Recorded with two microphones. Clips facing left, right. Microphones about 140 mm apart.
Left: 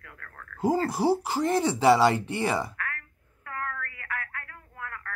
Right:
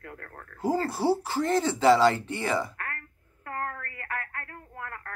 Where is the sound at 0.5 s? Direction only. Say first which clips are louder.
Left 2 dB; 20° left (ahead or behind).